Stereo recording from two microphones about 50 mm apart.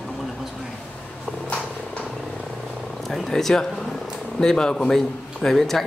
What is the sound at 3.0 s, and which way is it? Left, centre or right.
Purr, centre.